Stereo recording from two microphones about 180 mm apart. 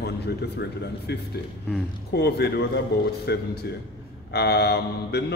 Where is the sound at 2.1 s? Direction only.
65° left (ahead or behind).